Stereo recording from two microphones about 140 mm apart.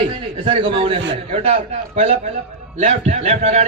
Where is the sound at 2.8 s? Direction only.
55° right (ahead or behind).